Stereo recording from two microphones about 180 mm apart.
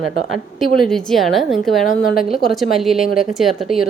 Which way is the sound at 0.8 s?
Centre (ahead or behind).